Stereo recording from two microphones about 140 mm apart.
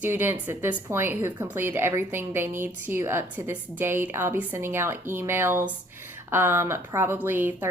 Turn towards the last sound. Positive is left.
turn(degrees=-15)  # may be behind; listen again after turning